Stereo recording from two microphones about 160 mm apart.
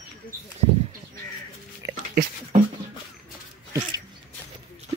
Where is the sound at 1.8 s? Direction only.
20° right (ahead or behind).